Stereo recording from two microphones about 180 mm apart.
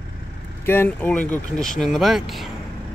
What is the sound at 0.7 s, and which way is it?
Speech, 10° left (ahead or behind).